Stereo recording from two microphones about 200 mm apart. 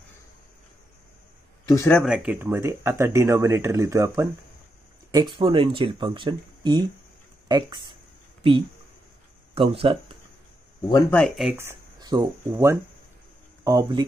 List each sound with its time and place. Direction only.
1.7 s speech: 10° left (ahead or behind)
2.0 s speech: 5° right (ahead or behind)
5.3 s speech: 25° right (ahead or behind)
10.9 s speech: 15° left (ahead or behind)
11.1 s speech: centre (ahead or behind)
11.5 s speech: 15° right (ahead or behind)